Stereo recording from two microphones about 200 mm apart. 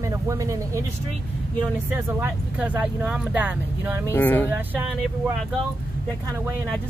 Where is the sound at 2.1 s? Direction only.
10° right (ahead or behind).